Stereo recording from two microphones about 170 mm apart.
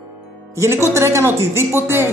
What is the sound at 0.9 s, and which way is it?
Speech, 15° right (ahead or behind).